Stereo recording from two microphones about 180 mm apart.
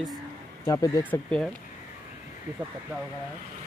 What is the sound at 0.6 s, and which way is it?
Speech, 20° left (ahead or behind).